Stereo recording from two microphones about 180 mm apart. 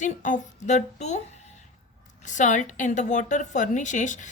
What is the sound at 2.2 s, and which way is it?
A woman's voice, 45° left (ahead or behind).